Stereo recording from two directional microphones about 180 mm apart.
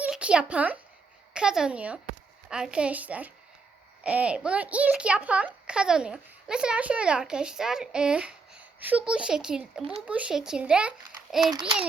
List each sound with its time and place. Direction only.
0.0 s a child's voice: 5° right (ahead or behind)